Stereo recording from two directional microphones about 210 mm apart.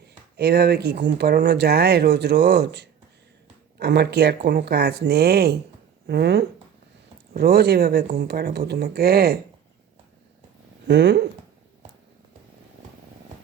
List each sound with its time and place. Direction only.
0.3 s speech: 50° right (ahead or behind)
10.8 s speech: 55° right (ahead or behind)